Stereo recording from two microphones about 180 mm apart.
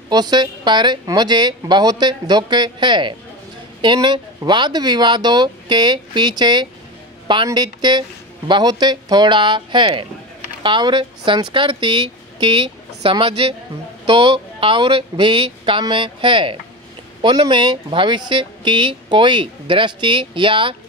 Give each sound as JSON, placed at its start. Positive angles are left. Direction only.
{"t": 0.1, "sound": "speech", "side_deg": -25}